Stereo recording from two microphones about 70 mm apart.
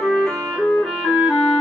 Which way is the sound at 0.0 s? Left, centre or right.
Centre.